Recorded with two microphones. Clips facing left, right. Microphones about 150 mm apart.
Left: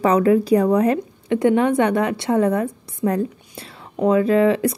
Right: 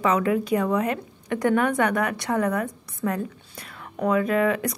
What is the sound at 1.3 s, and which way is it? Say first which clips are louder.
Speech: left 5 dB; 25° left (ahead or behind).